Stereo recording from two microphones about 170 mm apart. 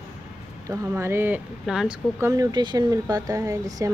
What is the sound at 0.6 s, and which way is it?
Speech, 15° right (ahead or behind).